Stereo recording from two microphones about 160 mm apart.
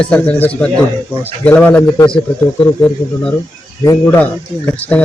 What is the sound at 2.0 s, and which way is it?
Speech, 30° left (ahead or behind).